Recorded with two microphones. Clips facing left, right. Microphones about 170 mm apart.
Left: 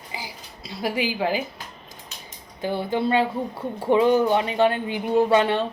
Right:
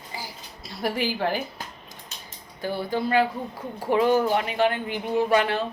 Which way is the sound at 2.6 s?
20° left (ahead or behind).